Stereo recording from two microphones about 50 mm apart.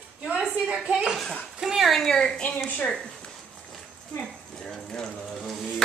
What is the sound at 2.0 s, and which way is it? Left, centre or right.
Speech, centre.